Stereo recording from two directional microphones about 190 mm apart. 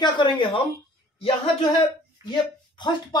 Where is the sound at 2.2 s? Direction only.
25° left (ahead or behind).